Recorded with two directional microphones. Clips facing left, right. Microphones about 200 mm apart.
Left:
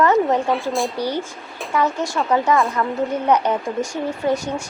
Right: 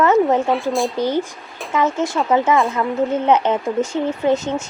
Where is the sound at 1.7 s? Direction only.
20° right (ahead or behind).